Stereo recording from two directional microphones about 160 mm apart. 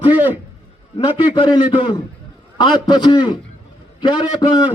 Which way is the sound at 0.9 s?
30° left (ahead or behind).